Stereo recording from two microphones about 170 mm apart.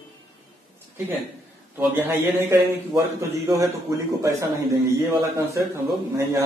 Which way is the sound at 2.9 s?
20° right (ahead or behind).